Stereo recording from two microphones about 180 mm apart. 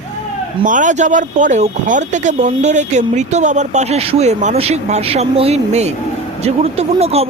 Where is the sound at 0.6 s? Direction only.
45° right (ahead or behind).